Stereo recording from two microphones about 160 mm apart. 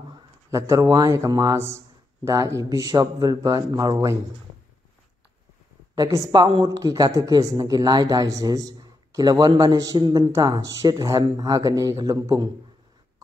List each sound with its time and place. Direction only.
0.5 s speech: 20° right (ahead or behind)
5.9 s speech: 20° right (ahead or behind)